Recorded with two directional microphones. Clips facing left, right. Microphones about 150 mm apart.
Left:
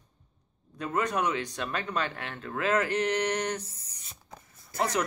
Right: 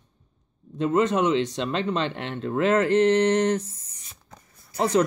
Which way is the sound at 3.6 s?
35° left (ahead or behind).